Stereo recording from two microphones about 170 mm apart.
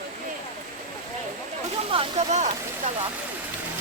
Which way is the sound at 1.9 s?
35° right (ahead or behind).